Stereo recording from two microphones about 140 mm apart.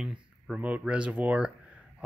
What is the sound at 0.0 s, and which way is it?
Speech, 5° right (ahead or behind).